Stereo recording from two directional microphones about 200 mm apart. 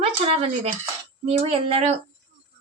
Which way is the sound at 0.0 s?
30° right (ahead or behind).